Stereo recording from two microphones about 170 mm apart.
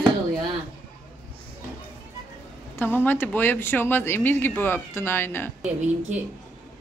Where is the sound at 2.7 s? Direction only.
10° left (ahead or behind).